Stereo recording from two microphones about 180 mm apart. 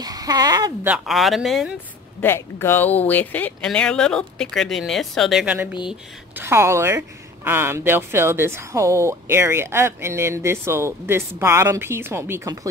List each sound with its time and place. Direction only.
0.0 s speech: 20° right (ahead or behind)
0.8 s speech: centre (ahead or behind)
2.2 s speech: 10° left (ahead or behind); by 12.5 s 15° right (ahead or behind)